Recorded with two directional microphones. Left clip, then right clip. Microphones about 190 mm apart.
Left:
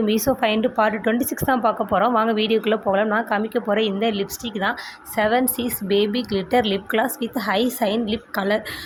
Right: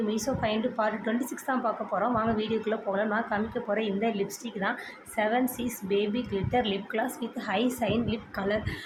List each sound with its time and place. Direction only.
0.1 s a woman's voice: 40° left (ahead or behind)